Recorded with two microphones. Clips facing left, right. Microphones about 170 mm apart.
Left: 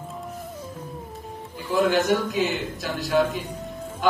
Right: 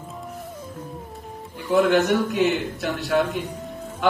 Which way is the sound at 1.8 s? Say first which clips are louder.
Right 2 dB; 65° right (ahead or behind).